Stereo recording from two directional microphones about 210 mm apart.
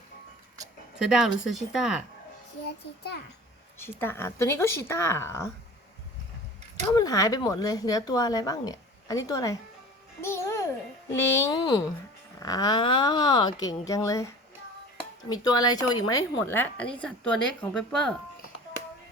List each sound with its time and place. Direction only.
0.9 s speech: 5° right (ahead or behind)
2.6 s a child's voice: 50° left (ahead or behind)
3.8 s a woman's voice: 10° left (ahead or behind)
6.9 s a woman's voice: 15° left (ahead or behind)
10.2 s music: 10° left (ahead or behind)
11.1 s a woman's voice: 15° left (ahead or behind)